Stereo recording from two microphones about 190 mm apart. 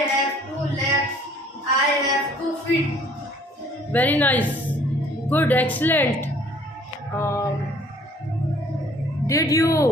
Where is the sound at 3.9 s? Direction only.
10° left (ahead or behind).